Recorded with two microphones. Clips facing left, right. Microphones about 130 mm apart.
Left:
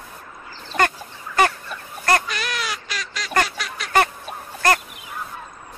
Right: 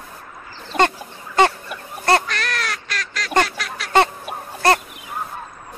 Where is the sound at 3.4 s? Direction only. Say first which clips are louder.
Right 1 dB; centre (ahead or behind).